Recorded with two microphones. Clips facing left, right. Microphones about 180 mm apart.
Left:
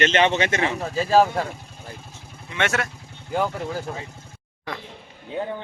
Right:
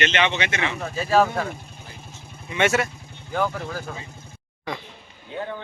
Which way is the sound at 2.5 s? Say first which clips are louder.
Right 4 dB; 5° right (ahead or behind).